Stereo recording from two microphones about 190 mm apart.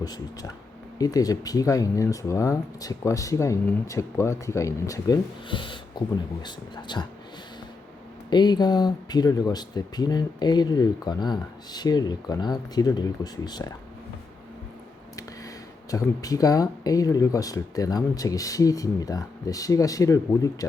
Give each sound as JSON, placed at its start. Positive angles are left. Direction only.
{"t": 0.0, "sound": "speech", "side_deg": 20}
{"t": 8.3, "sound": "speech", "side_deg": 20}
{"t": 15.9, "sound": "speech", "side_deg": 20}